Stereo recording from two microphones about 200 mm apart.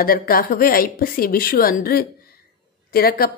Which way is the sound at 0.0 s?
45° left (ahead or behind).